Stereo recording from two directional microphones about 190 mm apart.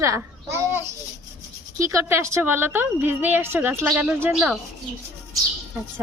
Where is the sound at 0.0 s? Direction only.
15° right (ahead or behind).